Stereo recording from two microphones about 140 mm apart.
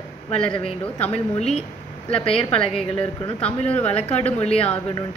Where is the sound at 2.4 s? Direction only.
40° left (ahead or behind).